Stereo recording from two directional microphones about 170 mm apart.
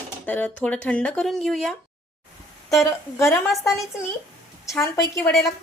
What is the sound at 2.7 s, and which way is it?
A woman's voice, 15° left (ahead or behind).